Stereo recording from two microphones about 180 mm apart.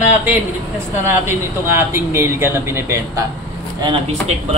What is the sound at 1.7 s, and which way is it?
Speech, 15° right (ahead or behind).